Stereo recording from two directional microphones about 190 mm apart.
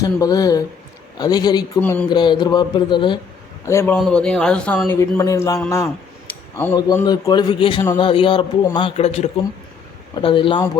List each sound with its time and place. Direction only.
0.0 s a man's voice: 20° left (ahead or behind)
1.8 s speech: 10° left (ahead or behind)
2.0 s a man's voice: 25° left (ahead or behind)
3.7 s speech: 15° left (ahead or behind)
3.9 s a man's voice: centre (ahead or behind); by 10.6 s 25° left (ahead or behind)